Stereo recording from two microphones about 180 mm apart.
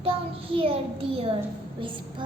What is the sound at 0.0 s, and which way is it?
Child singing, 30° right (ahead or behind).